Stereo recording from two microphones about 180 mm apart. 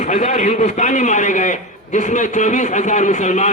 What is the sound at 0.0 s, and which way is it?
A man's voice, 40° left (ahead or behind).